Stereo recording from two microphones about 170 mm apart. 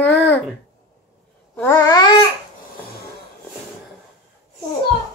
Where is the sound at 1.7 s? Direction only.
20° left (ahead or behind).